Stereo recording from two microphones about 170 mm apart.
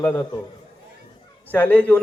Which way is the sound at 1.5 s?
10° left (ahead or behind).